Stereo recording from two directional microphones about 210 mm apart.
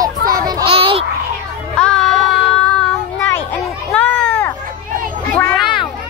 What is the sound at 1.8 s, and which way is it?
Child singing, 5° left (ahead or behind).